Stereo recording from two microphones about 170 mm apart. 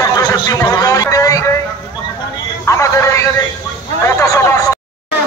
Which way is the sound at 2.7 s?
20° left (ahead or behind).